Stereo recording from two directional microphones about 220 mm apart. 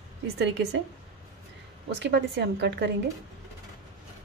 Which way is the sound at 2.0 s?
50° right (ahead or behind).